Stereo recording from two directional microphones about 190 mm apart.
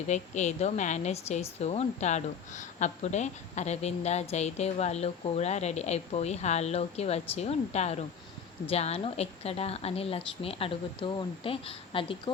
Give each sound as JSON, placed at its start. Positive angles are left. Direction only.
{"t": 0.1, "sound": "a woman's voice", "side_deg": 35}